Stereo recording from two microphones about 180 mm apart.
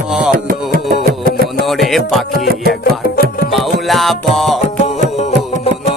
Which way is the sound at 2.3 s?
60° right (ahead or behind).